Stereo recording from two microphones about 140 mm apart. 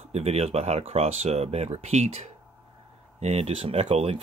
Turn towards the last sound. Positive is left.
turn(degrees=-50)  # may be behind; listen again after turning